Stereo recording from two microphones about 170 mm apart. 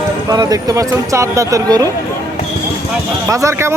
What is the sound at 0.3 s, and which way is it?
Speech, 20° right (ahead or behind).